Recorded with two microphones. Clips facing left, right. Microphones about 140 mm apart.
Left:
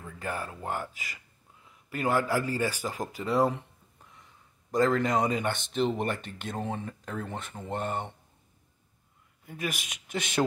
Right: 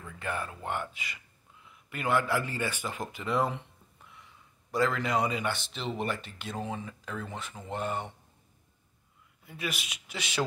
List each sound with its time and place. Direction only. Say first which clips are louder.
0.0 s a sound: even; 35° left (ahead or behind)
0.7 s speech: left 2 dB; 40° left (ahead or behind)
9.5 s speech: left 2 dB; 45° left (ahead or behind)